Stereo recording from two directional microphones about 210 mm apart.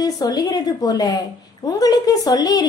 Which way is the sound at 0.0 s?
15° left (ahead or behind).